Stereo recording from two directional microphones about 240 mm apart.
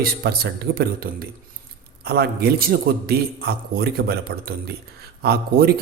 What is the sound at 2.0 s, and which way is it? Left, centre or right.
A man's voice, right.